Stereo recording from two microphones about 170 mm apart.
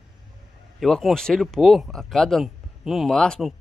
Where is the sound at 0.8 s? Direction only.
Centre (ahead or behind).